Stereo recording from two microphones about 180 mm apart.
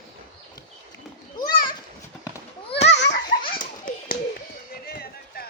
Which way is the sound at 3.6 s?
50° left (ahead or behind).